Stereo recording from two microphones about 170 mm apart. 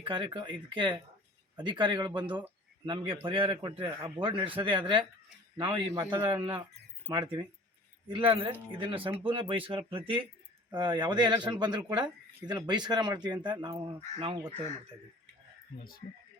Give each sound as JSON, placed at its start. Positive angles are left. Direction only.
{"t": 0.0, "sound": "speech", "side_deg": -30}
{"t": 15.8, "sound": "speech", "side_deg": 60}